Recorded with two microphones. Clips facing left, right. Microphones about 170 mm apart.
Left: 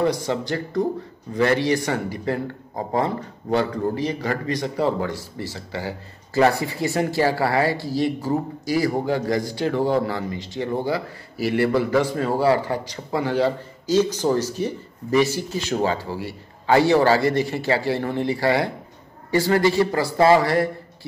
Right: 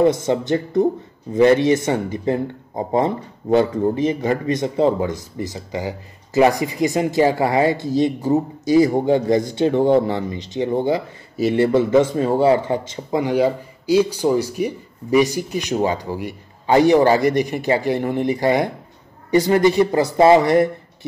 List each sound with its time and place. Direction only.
0.0 s a man's voice: 20° right (ahead or behind)